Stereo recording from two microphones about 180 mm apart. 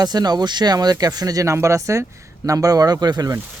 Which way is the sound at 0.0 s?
20° right (ahead or behind).